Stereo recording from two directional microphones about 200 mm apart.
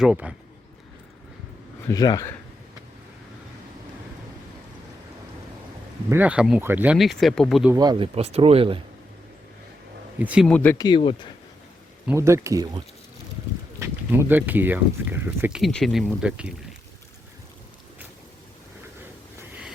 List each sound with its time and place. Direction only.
0.0 s speech: 5° right (ahead or behind)
1.9 s speech: 15° left (ahead or behind)
6.1 s speech: 10° right (ahead or behind)
7.7 s speech: 20° right (ahead or behind)
10.2 s speech: 5° right (ahead or behind)
10.4 s speech: 5° left (ahead or behind)
10.8 s speech: 25° left (ahead or behind)
12.0 s speech: 15° right (ahead or behind)
19.4 s a sound: 5° right (ahead or behind)